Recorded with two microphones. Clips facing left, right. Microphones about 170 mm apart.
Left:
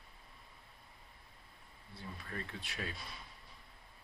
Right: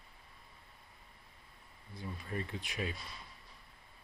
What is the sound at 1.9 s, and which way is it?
Speech, 15° right (ahead or behind).